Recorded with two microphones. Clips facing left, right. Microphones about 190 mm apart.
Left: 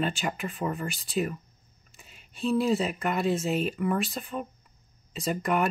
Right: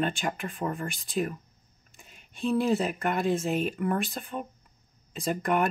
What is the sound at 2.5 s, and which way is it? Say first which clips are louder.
Speech: even; centre (ahead or behind).